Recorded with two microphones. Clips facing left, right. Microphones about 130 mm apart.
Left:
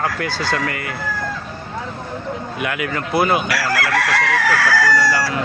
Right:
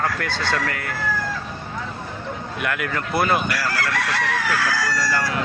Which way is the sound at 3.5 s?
85° left.